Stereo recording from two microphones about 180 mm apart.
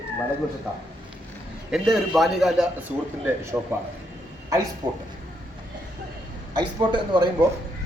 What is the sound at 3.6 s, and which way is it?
Speech, 15° right (ahead or behind).